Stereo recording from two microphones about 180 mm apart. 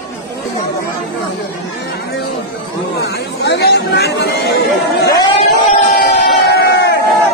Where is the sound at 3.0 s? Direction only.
65° left (ahead or behind).